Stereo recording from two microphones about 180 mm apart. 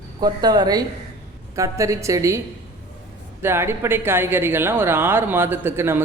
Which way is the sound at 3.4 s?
15° right (ahead or behind).